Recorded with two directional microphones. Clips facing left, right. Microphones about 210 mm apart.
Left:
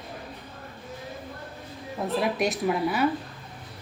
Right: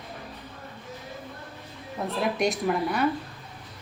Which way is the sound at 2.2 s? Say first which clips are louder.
Right 2 dB; centre (ahead or behind).